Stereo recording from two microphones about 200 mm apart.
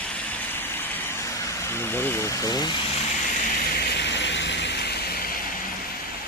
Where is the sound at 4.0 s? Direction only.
60° left (ahead or behind).